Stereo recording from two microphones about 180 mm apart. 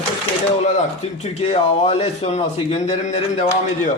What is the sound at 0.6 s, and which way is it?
Speech, 40° left (ahead or behind).